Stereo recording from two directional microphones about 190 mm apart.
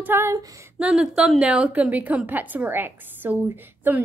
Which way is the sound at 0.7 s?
5° right (ahead or behind).